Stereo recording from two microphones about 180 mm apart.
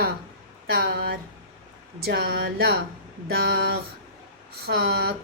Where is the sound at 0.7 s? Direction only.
55° right (ahead or behind).